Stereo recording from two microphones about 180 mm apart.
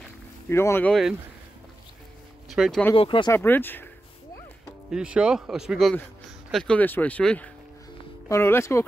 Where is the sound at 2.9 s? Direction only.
30° left (ahead or behind).